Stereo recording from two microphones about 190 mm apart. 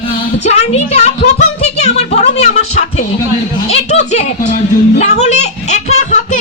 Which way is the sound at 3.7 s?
35° left (ahead or behind).